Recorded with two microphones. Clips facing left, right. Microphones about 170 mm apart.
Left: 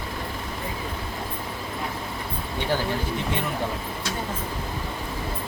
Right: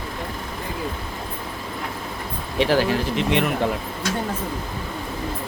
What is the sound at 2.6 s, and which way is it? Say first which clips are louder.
Speech: right 7 dB; 90° right.